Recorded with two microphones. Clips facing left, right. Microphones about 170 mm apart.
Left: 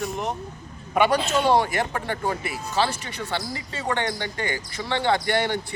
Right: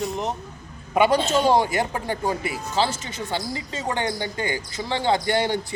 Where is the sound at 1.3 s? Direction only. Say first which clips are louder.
Right 1 dB; 20° right (ahead or behind).